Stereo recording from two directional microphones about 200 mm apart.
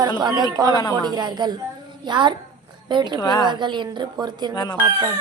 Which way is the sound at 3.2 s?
20° left (ahead or behind).